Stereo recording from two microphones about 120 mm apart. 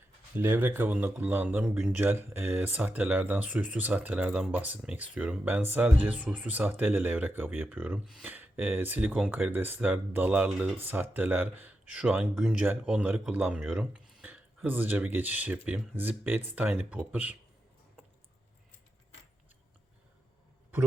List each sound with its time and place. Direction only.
0.3 s speech: 20° right (ahead or behind)
2.0 s speech: 15° right (ahead or behind)